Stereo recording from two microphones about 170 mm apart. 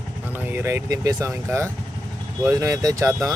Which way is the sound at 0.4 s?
10° right (ahead or behind).